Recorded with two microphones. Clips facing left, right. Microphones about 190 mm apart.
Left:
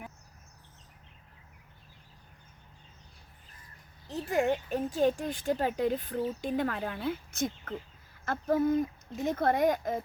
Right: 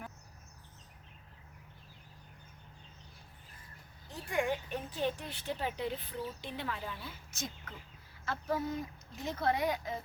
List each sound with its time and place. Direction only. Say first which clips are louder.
4.3 s speech: left 5 dB; 45° left (ahead or behind)